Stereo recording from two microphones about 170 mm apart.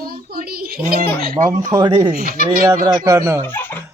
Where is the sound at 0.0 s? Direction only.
60° right (ahead or behind).